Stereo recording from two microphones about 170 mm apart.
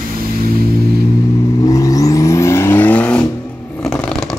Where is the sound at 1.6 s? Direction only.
20° left (ahead or behind); by 4.2 s 5° left (ahead or behind).